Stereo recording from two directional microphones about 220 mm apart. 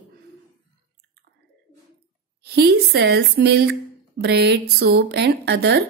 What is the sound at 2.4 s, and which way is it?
A woman's voice, 45° right (ahead or behind).